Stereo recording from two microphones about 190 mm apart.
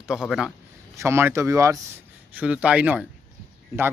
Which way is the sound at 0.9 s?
15° right (ahead or behind).